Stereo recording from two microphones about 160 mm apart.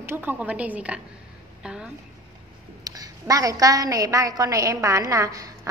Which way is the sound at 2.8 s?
25° right (ahead or behind).